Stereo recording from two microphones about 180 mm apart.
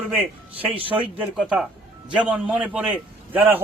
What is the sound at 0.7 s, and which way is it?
Speech, 30° right (ahead or behind).